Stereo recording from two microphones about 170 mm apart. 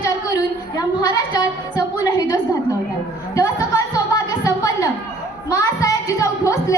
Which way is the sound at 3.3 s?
20° left (ahead or behind).